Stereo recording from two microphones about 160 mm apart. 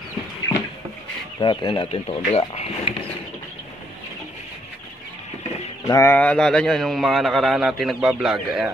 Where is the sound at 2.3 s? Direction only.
40° left (ahead or behind).